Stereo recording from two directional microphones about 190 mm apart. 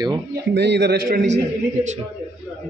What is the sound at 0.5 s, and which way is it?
Speech, 65° right (ahead or behind).